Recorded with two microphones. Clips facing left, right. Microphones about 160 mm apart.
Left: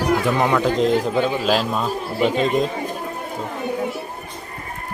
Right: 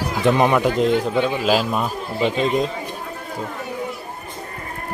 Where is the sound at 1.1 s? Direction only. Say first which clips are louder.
Even; centre (ahead or behind).